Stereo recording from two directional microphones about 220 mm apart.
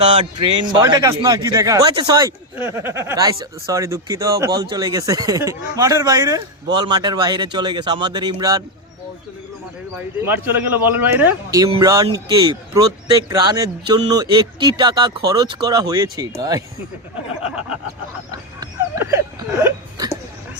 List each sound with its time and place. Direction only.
0.0 s a man's voice: 25° right (ahead or behind)
10.2 s a man's voice: 10° right (ahead or behind)
18.3 s a sound: 15° right (ahead or behind)